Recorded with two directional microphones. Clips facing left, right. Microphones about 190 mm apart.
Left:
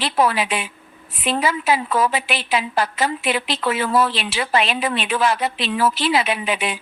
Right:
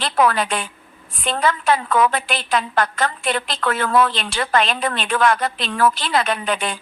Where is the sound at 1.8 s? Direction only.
30° left (ahead or behind).